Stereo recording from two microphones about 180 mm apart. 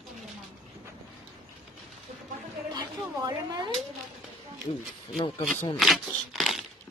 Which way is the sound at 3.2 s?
20° right (ahead or behind).